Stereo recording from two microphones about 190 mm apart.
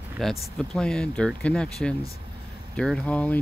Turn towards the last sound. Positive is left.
turn(degrees=5)  # may be behind; listen again after turning